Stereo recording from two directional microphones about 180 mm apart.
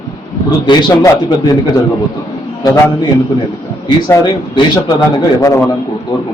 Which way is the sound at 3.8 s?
25° left (ahead or behind).